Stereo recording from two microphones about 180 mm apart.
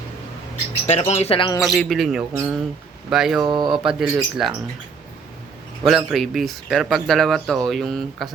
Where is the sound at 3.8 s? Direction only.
5° right (ahead or behind).